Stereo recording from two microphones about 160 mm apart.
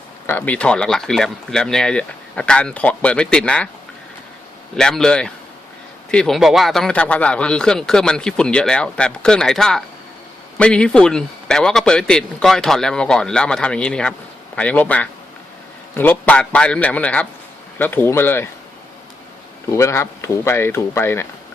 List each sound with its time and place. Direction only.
0.3 s speech: 10° left (ahead or behind)
4.8 s speech: 5° left (ahead or behind)
19.7 s speech: 15° left (ahead or behind)